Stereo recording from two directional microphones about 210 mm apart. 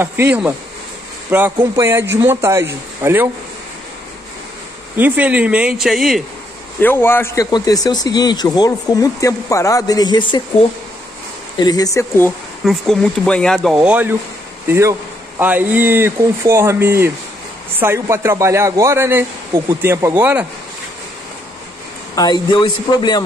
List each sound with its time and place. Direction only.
0.0 s a man's voice: 10° right (ahead or behind)
4.9 s speech: 10° right (ahead or behind)
6.8 s speech: 10° left (ahead or behind)
11.6 s speech: 15° left (ahead or behind)
12.6 s a man's voice: centre (ahead or behind)
22.1 s a man's voice: 20° left (ahead or behind)